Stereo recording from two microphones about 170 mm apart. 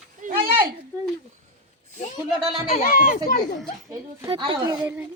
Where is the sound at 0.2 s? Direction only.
50° right (ahead or behind).